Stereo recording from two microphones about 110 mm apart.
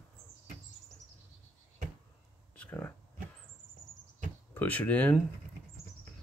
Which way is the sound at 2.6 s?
15° left (ahead or behind).